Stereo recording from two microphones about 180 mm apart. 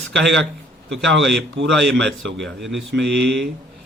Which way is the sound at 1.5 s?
85° right.